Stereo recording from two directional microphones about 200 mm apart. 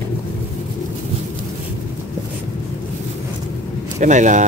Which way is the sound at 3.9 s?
35° right (ahead or behind).